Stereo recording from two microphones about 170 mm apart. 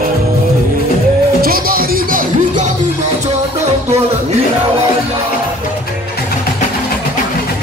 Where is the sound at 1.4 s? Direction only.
60° right (ahead or behind).